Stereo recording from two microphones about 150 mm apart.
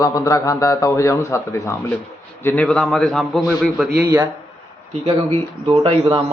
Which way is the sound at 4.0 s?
15° right (ahead or behind).